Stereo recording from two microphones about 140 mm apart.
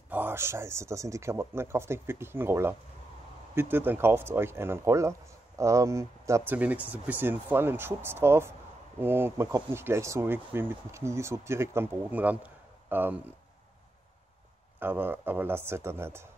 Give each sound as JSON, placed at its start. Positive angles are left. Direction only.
{"t": 0.1, "sound": "speech", "side_deg": -15}
{"t": 14.8, "sound": "speech", "side_deg": -15}